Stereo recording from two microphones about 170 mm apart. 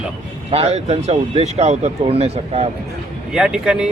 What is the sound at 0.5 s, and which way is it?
Speech, 35° right (ahead or behind).